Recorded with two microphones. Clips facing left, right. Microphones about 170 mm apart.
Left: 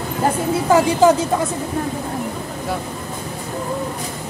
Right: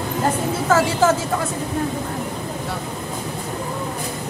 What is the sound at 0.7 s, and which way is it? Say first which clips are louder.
Speech: left 4 dB; 15° left (ahead or behind).